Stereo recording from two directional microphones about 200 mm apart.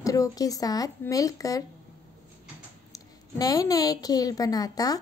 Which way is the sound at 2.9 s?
20° left (ahead or behind).